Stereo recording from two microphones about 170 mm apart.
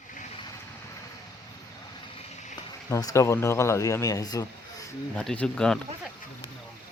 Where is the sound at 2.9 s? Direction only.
20° left (ahead or behind).